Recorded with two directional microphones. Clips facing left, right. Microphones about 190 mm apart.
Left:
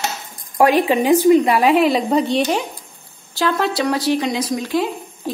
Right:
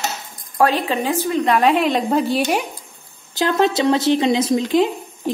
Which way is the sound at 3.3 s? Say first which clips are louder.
Right 2 dB; 20° right (ahead or behind).